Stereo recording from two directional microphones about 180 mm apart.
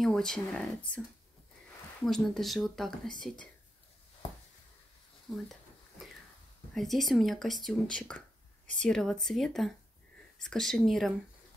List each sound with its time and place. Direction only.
0.0 s speech: 5° left (ahead or behind)
2.0 s speech: centre (ahead or behind)
5.3 s speech: centre (ahead or behind)
6.7 s speech: centre (ahead or behind)